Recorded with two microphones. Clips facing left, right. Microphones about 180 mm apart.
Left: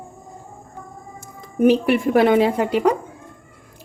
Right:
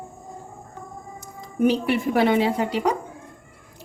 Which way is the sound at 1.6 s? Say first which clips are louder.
Left 5 dB; 55° left (ahead or behind).